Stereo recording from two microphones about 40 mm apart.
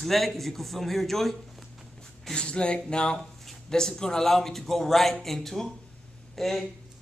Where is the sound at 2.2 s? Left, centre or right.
Left.